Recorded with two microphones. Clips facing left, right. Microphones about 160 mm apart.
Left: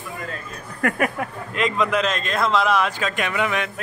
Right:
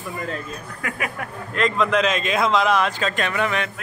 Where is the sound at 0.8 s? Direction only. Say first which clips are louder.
Left 8 dB; 55° left (ahead or behind).